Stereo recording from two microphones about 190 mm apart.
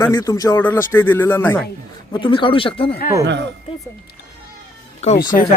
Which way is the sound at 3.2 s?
65° right (ahead or behind).